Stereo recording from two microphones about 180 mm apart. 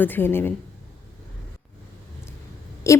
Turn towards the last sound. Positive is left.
turn(degrees=15)  # may be behind; listen again after turning